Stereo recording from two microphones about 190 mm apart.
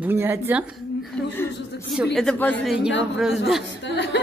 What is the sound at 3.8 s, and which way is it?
Chuckle, 65° left (ahead or behind).